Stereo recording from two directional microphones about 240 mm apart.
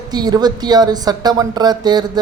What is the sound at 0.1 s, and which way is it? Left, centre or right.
A woman's voice, centre.